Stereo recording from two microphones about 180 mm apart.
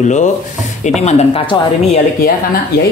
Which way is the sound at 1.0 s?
30° left (ahead or behind).